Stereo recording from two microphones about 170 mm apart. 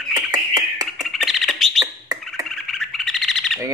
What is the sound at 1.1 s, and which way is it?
Bird, centre (ahead or behind).